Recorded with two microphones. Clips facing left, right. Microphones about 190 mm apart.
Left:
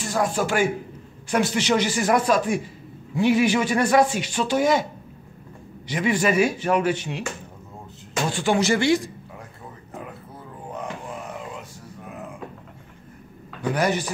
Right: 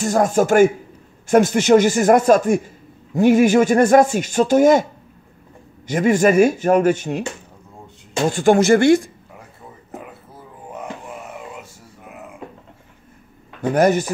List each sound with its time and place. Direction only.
0.0 s speech: 45° right (ahead or behind)
5.9 s speech: 45° right (ahead or behind)
8.3 s speech: 45° right (ahead or behind)
13.6 s speech: 45° right (ahead or behind)